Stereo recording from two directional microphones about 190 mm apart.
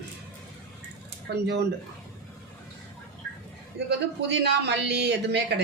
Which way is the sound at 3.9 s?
65° right (ahead or behind).